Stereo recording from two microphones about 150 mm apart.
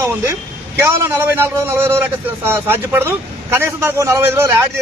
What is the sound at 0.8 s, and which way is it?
A man's voice, 15° right (ahead or behind).